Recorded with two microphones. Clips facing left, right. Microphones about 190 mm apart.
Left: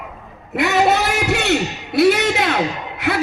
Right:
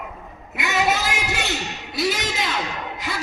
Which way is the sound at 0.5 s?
60° left (ahead or behind).